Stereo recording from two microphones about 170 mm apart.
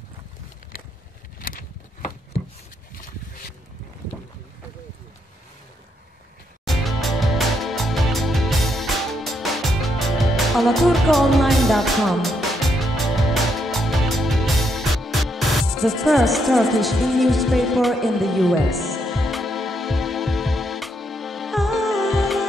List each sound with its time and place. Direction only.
0.7 s vehicle: 60° left (ahead or behind)
1.4 s a sound: 55° left (ahead or behind)
6.6 s music: centre (ahead or behind)